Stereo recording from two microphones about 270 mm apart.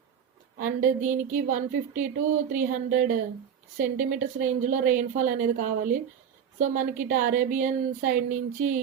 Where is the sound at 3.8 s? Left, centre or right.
Right.